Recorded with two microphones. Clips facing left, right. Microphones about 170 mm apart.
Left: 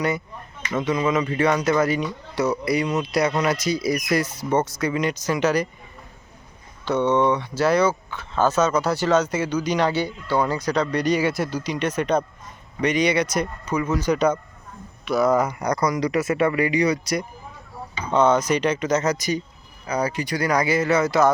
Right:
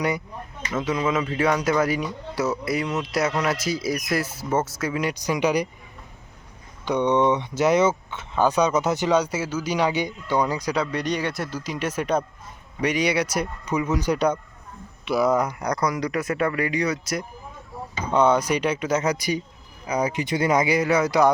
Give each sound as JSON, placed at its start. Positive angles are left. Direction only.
{"t": 0.8, "sound": "speech", "side_deg": -5}
{"t": 6.8, "sound": "speech", "side_deg": -15}
{"t": 14.1, "sound": "speech", "side_deg": 5}